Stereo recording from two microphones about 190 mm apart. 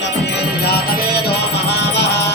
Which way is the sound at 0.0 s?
60° left (ahead or behind).